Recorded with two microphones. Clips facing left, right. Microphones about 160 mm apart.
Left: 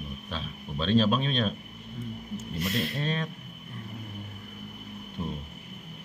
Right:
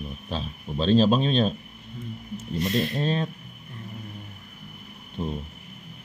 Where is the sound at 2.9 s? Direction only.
30° right (ahead or behind).